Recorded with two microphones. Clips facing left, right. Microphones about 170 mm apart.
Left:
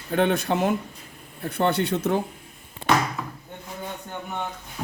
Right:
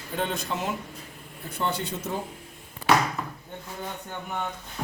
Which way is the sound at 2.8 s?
25° left (ahead or behind).